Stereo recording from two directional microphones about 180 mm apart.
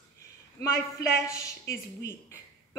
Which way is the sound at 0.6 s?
15° left (ahead or behind).